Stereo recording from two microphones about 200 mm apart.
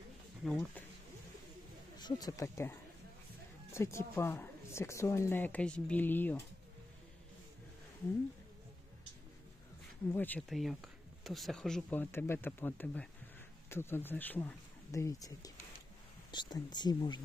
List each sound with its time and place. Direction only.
0.5 s speech: 5° left (ahead or behind)
2.0 s speech: 20° left (ahead or behind)
10.1 s speech: 10° left (ahead or behind)